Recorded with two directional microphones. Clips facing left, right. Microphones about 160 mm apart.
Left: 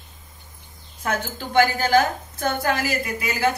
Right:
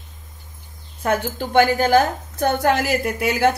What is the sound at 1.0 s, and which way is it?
A woman's voice, 55° right (ahead or behind).